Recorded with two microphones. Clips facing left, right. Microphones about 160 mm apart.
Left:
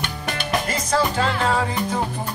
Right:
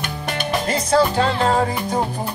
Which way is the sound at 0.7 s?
35° right (ahead or behind).